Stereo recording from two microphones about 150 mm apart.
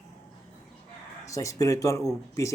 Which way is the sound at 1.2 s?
20° left (ahead or behind).